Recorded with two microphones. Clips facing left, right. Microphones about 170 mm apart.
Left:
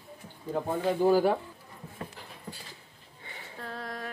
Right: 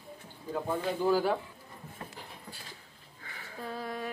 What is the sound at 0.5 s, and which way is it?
Speech, 50° left (ahead or behind).